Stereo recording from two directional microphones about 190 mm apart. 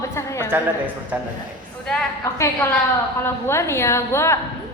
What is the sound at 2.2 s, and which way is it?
A woman's voice, 15° left (ahead or behind).